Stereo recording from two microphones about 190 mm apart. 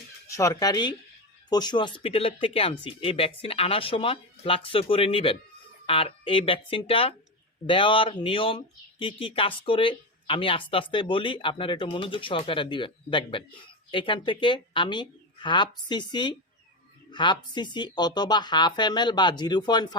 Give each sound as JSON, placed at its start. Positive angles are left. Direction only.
{"t": 0.3, "sound": "speech", "side_deg": 15}